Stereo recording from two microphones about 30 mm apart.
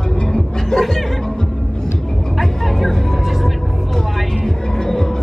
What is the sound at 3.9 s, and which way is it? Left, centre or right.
Music, centre.